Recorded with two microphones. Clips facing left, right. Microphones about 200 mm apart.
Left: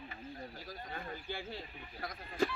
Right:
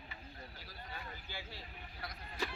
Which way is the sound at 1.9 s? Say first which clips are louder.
Left 8 dB; 50° left (ahead or behind).